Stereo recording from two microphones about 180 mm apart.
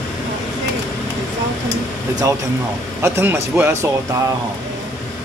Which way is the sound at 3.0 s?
15° right (ahead or behind).